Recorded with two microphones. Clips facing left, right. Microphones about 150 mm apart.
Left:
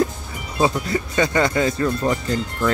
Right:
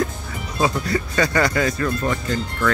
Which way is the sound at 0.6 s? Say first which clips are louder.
Left 1 dB; 20° left (ahead or behind).